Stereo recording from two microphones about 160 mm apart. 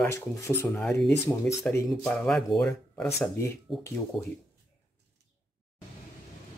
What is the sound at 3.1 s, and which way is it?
Speech, 15° left (ahead or behind).